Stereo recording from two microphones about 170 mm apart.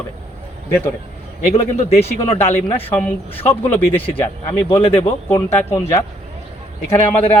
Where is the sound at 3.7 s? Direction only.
10° left (ahead or behind).